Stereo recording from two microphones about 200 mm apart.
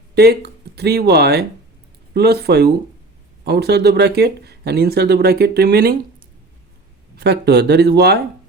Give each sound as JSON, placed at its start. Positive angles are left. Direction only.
{"t": 0.1, "sound": "speech", "side_deg": -55}
{"t": 7.2, "sound": "speech", "side_deg": -55}